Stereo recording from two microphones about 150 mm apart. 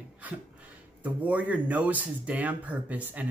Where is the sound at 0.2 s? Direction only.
10° right (ahead or behind).